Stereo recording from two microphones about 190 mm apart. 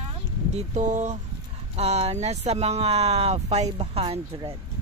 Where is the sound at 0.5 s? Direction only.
35° right (ahead or behind).